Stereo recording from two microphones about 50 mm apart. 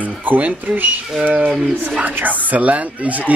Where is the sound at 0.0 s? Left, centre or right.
Right.